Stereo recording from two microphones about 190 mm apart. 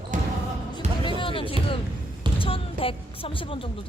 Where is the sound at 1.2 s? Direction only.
25° left (ahead or behind).